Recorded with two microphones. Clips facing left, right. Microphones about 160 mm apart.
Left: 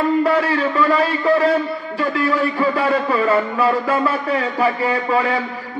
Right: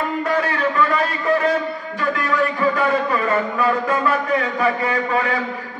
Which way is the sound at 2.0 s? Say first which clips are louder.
Left 2 dB; 30° left (ahead or behind).